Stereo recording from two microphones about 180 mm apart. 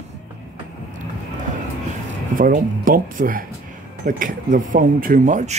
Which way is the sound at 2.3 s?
50° right (ahead or behind).